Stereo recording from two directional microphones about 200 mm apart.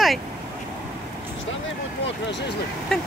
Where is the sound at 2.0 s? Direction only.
60° left (ahead or behind).